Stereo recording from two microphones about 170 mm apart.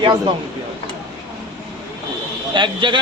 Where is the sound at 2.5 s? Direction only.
30° right (ahead or behind).